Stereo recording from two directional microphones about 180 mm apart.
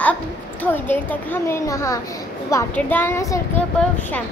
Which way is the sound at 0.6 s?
10° left (ahead or behind).